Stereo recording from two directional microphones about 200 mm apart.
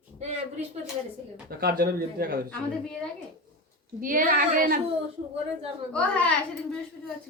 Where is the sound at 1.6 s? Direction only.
50° right (ahead or behind).